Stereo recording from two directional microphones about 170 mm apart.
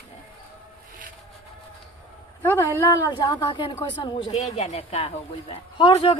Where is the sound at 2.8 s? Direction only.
20° left (ahead or behind).